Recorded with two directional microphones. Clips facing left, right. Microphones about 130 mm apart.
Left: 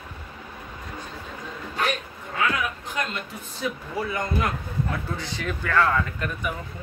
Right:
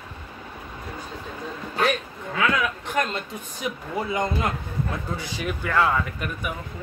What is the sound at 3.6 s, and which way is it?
Speech, 20° right (ahead or behind).